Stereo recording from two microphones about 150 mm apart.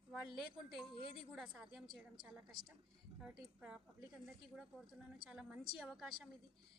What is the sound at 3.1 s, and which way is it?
Speech, 5° right (ahead or behind).